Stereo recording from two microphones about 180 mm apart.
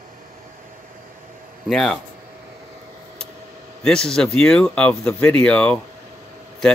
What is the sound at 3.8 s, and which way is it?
Speech, 5° left (ahead or behind).